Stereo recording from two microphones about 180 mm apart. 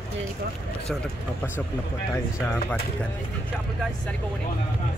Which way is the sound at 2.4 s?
10° left (ahead or behind).